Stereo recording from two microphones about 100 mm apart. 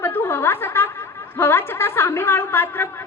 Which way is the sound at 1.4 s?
20° left (ahead or behind).